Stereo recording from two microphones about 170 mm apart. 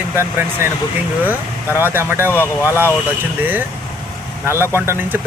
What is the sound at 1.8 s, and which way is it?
Speech, 10° right (ahead or behind).